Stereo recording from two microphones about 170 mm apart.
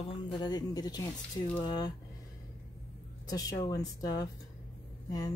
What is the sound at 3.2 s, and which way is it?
Speech, 20° left (ahead or behind).